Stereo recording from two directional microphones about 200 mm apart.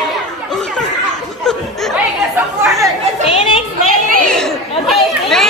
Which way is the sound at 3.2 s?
25° left (ahead or behind).